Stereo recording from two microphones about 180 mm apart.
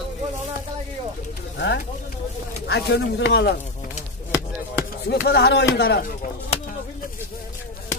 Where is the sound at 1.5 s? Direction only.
75° left (ahead or behind).